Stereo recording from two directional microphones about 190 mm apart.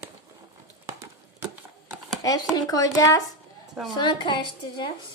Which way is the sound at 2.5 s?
20° left (ahead or behind).